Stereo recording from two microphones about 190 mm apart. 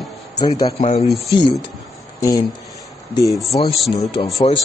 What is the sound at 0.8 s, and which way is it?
Speech, 35° left (ahead or behind).